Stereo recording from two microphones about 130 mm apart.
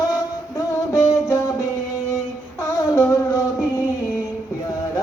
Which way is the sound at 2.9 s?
20° left (ahead or behind).